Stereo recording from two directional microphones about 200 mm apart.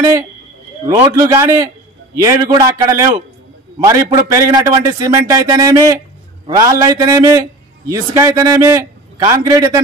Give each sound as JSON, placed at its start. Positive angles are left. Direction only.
{"t": 0.0, "sound": "a man's voice", "side_deg": -15}